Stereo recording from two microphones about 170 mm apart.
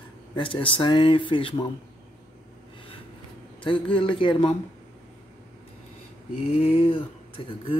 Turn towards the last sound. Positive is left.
turn(degrees=30)  # may be behind; listen again after turning